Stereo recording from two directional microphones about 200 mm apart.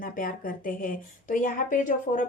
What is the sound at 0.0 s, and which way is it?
Speech, 45° left (ahead or behind).